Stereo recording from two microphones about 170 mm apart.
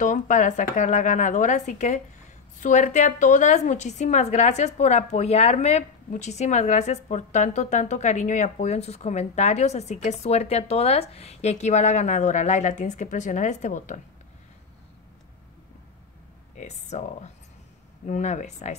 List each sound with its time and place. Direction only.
0.0 s a woman's voice: 45° left (ahead or behind)
16.5 s a woman's voice: 40° left (ahead or behind)